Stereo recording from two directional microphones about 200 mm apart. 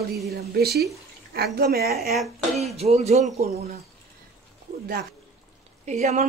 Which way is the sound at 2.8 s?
30° right (ahead or behind).